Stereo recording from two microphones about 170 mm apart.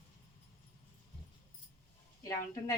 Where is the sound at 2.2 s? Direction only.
20° left (ahead or behind).